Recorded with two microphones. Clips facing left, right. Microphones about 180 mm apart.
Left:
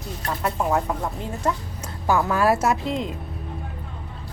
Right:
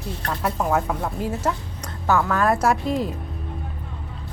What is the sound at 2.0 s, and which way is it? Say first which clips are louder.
Speech: even; 15° left (ahead or behind).